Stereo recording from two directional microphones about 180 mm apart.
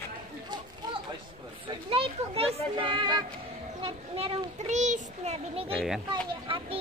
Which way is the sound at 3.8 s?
30° right (ahead or behind).